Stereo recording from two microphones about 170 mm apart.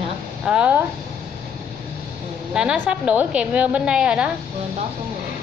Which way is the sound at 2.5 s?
5° right (ahead or behind).